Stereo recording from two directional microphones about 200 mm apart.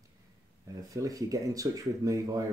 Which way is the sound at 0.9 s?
15° right (ahead or behind).